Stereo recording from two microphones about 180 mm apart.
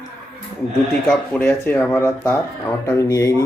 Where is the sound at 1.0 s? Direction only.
5° left (ahead or behind).